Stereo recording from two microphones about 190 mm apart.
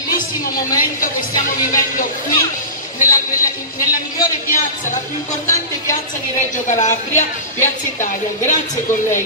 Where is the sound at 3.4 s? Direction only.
45° left (ahead or behind).